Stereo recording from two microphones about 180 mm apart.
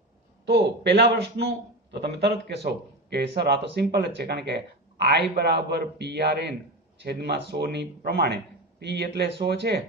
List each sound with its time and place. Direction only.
0.5 s a man's voice: 70° right (ahead or behind)